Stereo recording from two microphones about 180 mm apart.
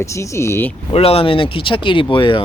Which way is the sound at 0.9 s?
30° left (ahead or behind).